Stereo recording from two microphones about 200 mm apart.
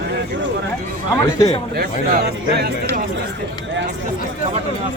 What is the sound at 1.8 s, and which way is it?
Speech, 50° right (ahead or behind).